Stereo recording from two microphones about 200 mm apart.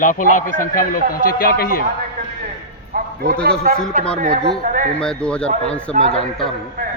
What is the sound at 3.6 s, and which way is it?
Speech, 45° right (ahead or behind).